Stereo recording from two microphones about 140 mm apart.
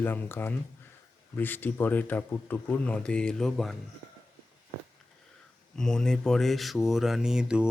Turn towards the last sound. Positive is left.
turn(degrees=-5)  # may be behind; listen again after turning